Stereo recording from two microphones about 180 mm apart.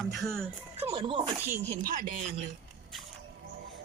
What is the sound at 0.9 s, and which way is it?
Speech, 30° right (ahead or behind).